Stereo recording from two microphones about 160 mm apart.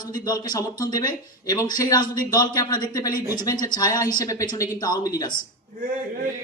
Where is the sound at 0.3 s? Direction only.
25° left (ahead or behind).